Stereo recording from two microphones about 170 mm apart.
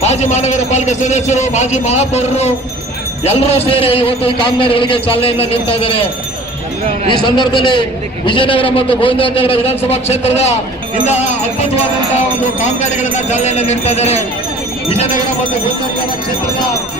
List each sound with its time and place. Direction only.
0.0 s a man's voice: 40° left (ahead or behind)
7.1 s a man's voice: 25° left (ahead or behind)